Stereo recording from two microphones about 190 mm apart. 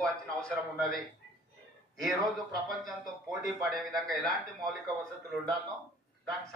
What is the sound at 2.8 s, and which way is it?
A man's voice, centre (ahead or behind).